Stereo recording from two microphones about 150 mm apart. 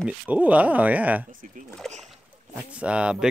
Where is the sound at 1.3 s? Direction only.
60° right (ahead or behind).